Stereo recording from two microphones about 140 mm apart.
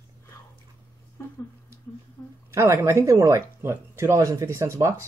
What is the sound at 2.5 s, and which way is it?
Speech, 20° right (ahead or behind).